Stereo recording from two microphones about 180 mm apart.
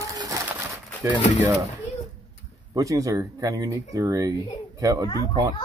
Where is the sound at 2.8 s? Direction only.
20° right (ahead or behind).